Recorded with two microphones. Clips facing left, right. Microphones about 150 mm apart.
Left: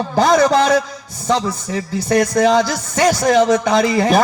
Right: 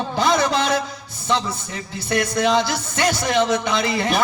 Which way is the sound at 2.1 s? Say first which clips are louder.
Left 5 dB; 45° left (ahead or behind).